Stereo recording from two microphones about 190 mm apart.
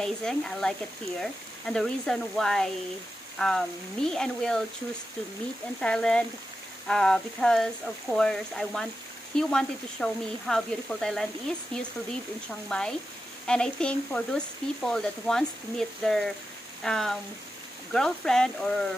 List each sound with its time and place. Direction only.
0.0 s speech: 5° left (ahead or behind)
5.8 s speech: 5° left (ahead or behind)
12.6 s speech: 5° left (ahead or behind)